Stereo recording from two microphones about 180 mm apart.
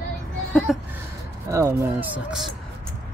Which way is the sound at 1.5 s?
15° right (ahead or behind).